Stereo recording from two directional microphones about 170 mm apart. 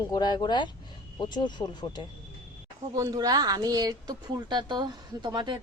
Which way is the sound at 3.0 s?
20° right (ahead or behind).